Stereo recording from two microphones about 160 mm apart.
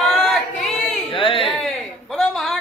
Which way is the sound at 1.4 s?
Centre (ahead or behind).